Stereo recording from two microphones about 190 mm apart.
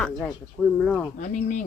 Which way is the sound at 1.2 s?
45° left (ahead or behind).